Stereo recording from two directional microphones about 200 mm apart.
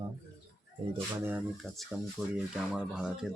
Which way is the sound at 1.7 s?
Centre (ahead or behind).